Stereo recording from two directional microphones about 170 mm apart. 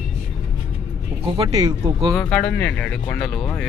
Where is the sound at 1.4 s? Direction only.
25° right (ahead or behind).